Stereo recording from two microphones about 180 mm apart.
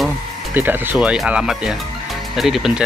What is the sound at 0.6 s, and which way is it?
Speech, 10° right (ahead or behind).